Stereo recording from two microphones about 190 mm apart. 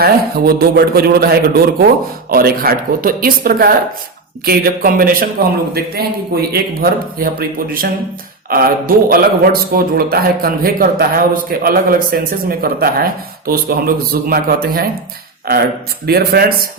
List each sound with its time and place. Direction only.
0.0 s a man's voice: 55° right (ahead or behind)
16.0 s a man's voice: 55° right (ahead or behind)